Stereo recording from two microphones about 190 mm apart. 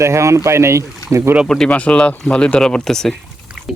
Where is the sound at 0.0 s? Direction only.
15° right (ahead or behind).